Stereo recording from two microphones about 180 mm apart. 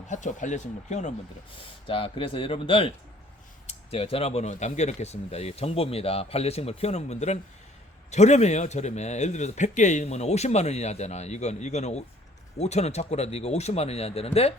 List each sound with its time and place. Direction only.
0.1 s speech: 45° left (ahead or behind)
1.9 s a man's voice: 30° left (ahead or behind)